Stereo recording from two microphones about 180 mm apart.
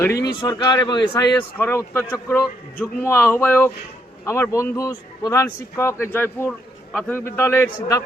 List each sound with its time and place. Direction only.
0.3 s speech: 20° left (ahead or behind)